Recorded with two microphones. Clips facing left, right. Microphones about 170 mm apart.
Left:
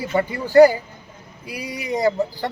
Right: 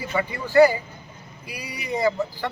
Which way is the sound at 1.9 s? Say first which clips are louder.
Left 3 dB; 35° left (ahead or behind).